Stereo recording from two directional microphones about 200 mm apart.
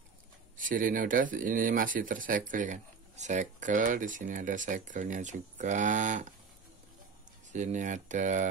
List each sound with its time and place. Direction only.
0.6 s speech: 40° right (ahead or behind)
7.5 s speech: 40° right (ahead or behind)